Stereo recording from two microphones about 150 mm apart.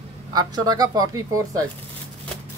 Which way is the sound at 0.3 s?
25° right (ahead or behind).